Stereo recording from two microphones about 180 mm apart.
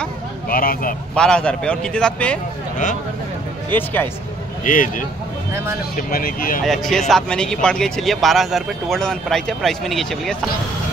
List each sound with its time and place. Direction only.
0.5 s speech: 55° left (ahead or behind)
1.1 s speech: 5° left (ahead or behind)
3.7 s speech: 10° left (ahead or behind)
4.6 s speech: 50° left (ahead or behind)
5.5 s speech: 15° right (ahead or behind)
5.9 s speech: 55° left (ahead or behind)
6.6 s speech: centre (ahead or behind)